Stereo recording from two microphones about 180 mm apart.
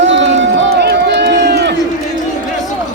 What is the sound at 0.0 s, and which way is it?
Run, 90° right.